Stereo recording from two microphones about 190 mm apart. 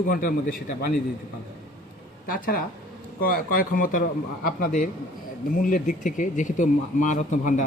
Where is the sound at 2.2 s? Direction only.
50° left (ahead or behind).